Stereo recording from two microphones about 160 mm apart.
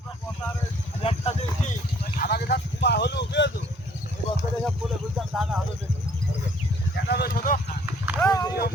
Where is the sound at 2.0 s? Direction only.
75° left (ahead or behind); by 3.5 s 90° left.